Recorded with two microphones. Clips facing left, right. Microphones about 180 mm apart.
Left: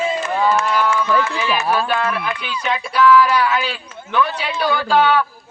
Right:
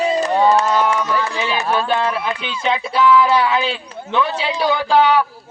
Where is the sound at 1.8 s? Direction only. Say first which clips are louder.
Right 2 dB; 25° right (ahead or behind).